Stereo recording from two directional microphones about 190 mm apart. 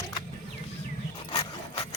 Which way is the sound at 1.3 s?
30° left (ahead or behind).